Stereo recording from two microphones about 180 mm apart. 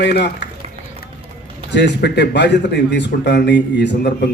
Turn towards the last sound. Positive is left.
turn(degrees=70)  # may be behind; listen again after turning